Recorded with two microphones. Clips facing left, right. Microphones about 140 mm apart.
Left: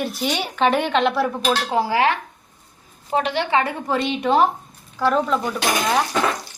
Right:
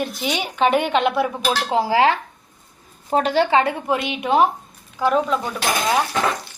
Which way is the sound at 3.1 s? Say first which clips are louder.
Right 3 dB; 40° right (ahead or behind).